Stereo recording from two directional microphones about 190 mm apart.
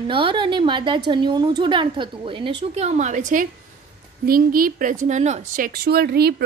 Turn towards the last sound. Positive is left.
turn(degrees=-55)  # may be behind; listen again after turning